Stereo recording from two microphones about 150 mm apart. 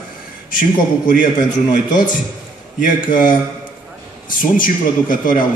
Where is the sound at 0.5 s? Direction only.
65° left (ahead or behind).